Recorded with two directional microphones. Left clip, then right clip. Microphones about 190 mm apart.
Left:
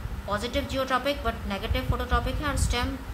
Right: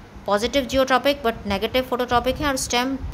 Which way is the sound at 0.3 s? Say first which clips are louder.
Right 9 dB; 50° right (ahead or behind).